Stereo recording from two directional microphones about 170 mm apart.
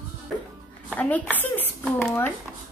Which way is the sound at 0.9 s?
10° left (ahead or behind).